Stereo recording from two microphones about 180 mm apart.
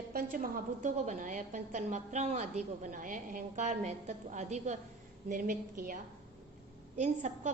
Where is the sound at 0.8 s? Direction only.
45° right (ahead or behind).